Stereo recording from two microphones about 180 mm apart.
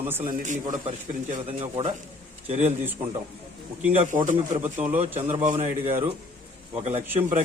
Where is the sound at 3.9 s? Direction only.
40° right (ahead or behind).